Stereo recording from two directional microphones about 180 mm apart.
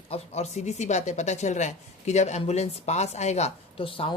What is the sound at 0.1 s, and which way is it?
Speech, 35° left (ahead or behind).